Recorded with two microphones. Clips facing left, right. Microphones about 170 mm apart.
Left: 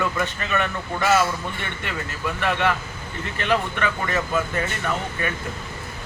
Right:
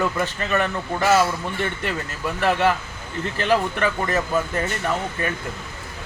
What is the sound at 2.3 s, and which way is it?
Speech, 35° right (ahead or behind).